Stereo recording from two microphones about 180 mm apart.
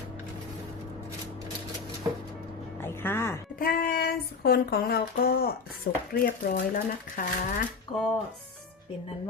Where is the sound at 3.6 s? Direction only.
50° left (ahead or behind).